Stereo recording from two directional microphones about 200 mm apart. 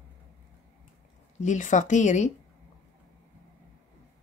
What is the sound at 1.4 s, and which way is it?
Speech, 35° left (ahead or behind).